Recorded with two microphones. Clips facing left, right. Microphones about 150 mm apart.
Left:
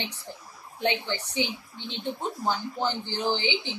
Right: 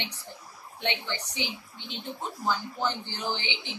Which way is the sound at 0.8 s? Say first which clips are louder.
Left 5 dB; 30° left (ahead or behind).